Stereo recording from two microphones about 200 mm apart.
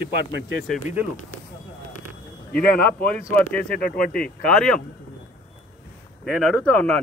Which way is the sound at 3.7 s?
45° left (ahead or behind).